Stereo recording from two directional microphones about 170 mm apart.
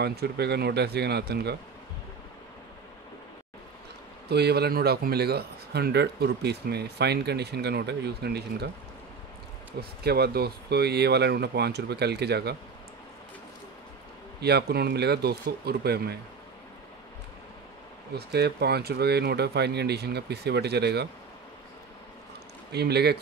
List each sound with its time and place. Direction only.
0.0 s a man's voice: 70° right (ahead or behind)
4.3 s a man's voice: 75° right (ahead or behind)
9.8 s a man's voice: 70° right (ahead or behind)
14.4 s a man's voice: 70° right (ahead or behind)
18.1 s a man's voice: 70° right (ahead or behind)
22.7 s a man's voice: 75° right (ahead or behind)